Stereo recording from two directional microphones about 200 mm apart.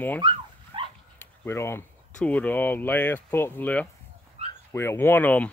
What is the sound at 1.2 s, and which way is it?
Speech, 10° left (ahead or behind).